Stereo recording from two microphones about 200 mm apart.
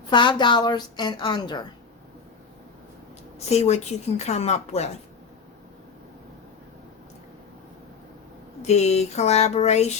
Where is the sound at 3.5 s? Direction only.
35° left (ahead or behind).